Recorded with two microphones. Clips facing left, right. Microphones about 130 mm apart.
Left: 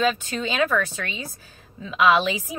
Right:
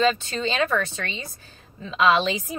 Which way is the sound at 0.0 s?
10° left (ahead or behind).